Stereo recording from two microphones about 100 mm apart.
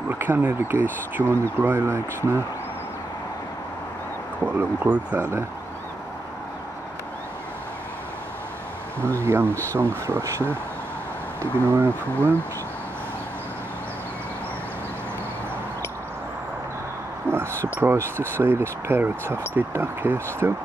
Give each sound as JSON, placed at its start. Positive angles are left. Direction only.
{"t": 0.1, "sound": "speech", "side_deg": -20}
{"t": 4.6, "sound": "speech", "side_deg": -20}
{"t": 9.2, "sound": "speech", "side_deg": -25}
{"t": 11.7, "sound": "speech", "side_deg": -25}
{"t": 17.3, "sound": "speech", "side_deg": 15}
{"t": 17.7, "sound": "speech", "side_deg": -25}